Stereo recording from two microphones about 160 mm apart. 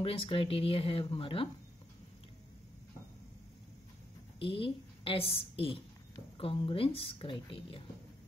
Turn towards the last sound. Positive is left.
turn(degrees=30)  # may be behind; listen again after turning